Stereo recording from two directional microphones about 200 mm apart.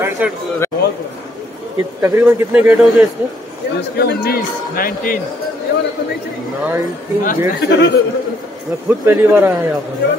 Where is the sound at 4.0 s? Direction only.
50° left (ahead or behind).